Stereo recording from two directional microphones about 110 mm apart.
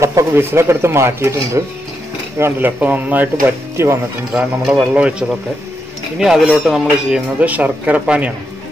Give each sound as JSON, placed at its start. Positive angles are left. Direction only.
{"t": 0.0, "sound": "speech", "side_deg": -25}
{"t": 4.3, "sound": "speech", "side_deg": -5}
{"t": 6.1, "sound": "speech", "side_deg": -5}